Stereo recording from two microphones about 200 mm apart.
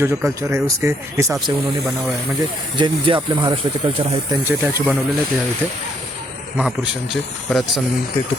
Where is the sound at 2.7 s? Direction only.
25° right (ahead or behind).